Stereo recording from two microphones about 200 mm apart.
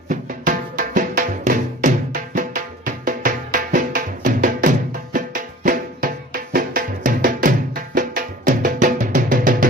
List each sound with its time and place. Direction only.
0.1 s music: 40° right (ahead or behind)